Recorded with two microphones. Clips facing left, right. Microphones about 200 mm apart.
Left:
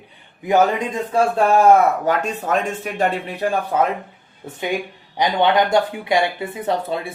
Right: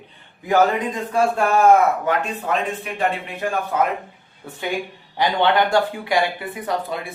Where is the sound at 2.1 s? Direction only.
45° left (ahead or behind).